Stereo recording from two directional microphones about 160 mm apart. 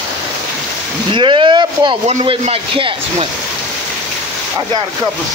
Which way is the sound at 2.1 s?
40° right (ahead or behind).